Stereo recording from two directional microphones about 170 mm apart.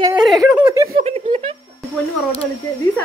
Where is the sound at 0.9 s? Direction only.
40° right (ahead or behind).